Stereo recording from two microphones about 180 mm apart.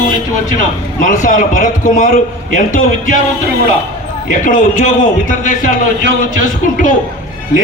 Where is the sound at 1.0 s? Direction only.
45° left (ahead or behind).